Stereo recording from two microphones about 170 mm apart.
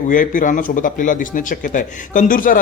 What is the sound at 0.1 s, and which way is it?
A man's voice, 50° left (ahead or behind).